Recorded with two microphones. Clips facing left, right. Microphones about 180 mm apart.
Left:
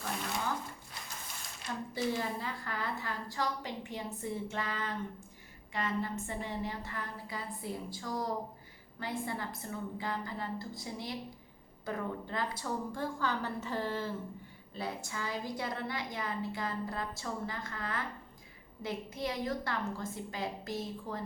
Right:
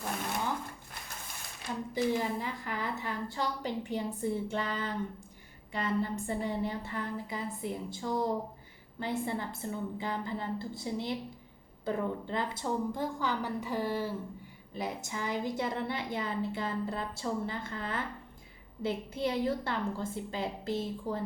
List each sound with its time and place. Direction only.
1.7 s a woman's voice: 20° right (ahead or behind)